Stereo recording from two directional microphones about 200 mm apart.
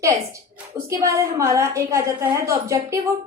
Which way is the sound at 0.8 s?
15° right (ahead or behind).